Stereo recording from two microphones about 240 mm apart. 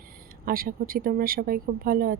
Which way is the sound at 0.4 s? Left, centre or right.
Right.